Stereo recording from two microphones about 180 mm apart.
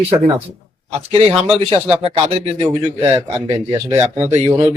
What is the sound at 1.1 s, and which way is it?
Speech, 35° right (ahead or behind).